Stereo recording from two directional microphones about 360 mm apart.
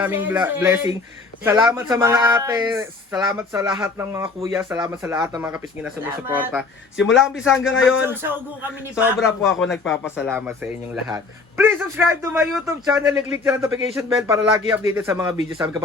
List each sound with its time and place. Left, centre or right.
0.0 s speech: centre
6.9 s speech: left
7.4 s speech: centre